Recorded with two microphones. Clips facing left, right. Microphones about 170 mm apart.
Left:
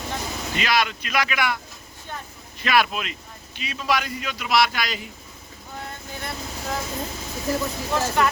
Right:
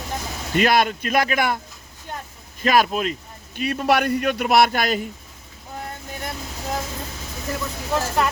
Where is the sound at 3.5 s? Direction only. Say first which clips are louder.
Right 6 dB; 55° right (ahead or behind).